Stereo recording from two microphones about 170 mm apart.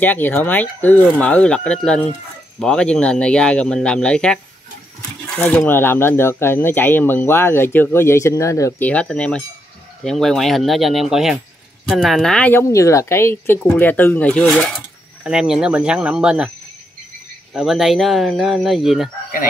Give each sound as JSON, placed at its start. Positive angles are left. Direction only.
{"t": 0.0, "sound": "speech", "side_deg": 10}
{"t": 17.6, "sound": "speech", "side_deg": 0}